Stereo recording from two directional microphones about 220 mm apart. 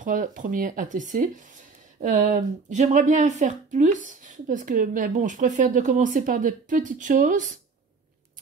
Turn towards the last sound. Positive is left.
turn(degrees=-35)  # may be behind; listen again after turning